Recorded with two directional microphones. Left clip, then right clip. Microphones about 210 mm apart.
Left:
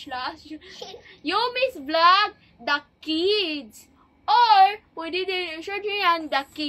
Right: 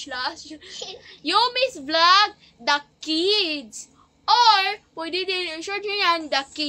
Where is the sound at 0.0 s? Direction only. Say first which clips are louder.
Right 2 dB; 15° right (ahead or behind).